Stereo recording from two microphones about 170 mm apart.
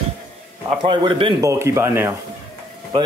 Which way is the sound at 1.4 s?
15° right (ahead or behind).